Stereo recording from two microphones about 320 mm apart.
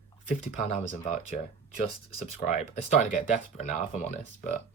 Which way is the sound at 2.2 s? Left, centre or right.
Left.